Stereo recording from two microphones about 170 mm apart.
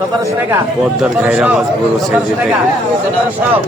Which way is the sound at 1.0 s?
5° right (ahead or behind).